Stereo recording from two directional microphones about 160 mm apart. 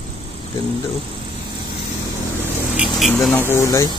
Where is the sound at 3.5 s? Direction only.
20° left (ahead or behind).